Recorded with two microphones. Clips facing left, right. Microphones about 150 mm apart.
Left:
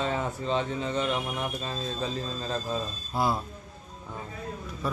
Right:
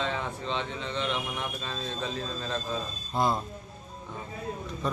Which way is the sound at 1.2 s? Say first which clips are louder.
Left 3 dB; 30° left (ahead or behind).